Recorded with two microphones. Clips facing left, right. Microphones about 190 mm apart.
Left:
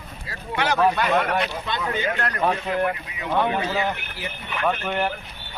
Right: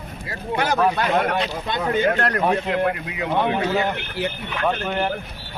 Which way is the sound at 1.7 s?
50° right (ahead or behind).